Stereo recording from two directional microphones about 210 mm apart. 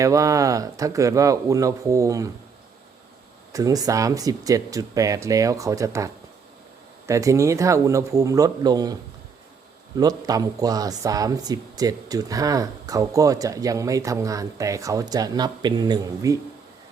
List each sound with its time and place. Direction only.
0.0 s speech: 15° right (ahead or behind)
3.5 s speech: 15° right (ahead or behind)
7.1 s speech: 15° right (ahead or behind)
10.0 s speech: 20° right (ahead or behind)